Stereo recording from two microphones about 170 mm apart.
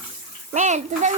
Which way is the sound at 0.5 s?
45° right (ahead or behind).